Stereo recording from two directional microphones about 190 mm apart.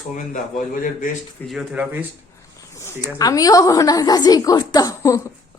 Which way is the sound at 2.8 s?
20° left (ahead or behind).